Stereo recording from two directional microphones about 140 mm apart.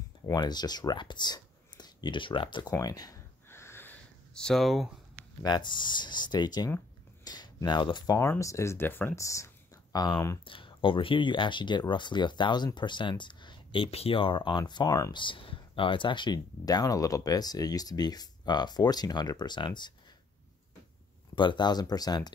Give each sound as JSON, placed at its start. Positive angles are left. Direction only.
{"t": 0.3, "sound": "speech", "side_deg": 30}
{"t": 2.7, "sound": "a sound", "side_deg": 25}
{"t": 5.4, "sound": "speech", "side_deg": 30}
{"t": 8.2, "sound": "speech", "side_deg": 20}
{"t": 10.4, "sound": "speech", "side_deg": 40}
{"t": 21.4, "sound": "speech", "side_deg": 35}